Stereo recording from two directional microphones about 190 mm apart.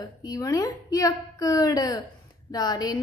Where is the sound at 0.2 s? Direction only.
20° left (ahead or behind).